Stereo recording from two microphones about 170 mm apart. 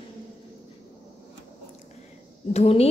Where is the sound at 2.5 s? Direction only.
35° left (ahead or behind).